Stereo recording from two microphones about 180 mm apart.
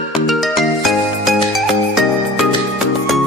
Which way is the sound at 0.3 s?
Centre (ahead or behind).